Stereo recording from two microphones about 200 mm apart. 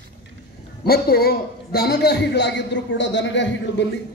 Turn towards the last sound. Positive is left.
turn(degrees=65)  # may be behind; listen again after turning